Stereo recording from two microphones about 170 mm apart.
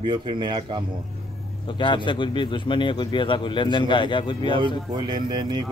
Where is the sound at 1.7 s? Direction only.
30° left (ahead or behind).